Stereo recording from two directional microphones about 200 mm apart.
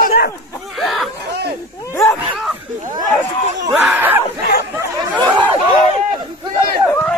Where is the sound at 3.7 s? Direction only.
5° right (ahead or behind).